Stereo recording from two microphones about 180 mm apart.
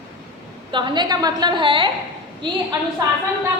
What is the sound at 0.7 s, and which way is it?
A woman's voice, 25° right (ahead or behind).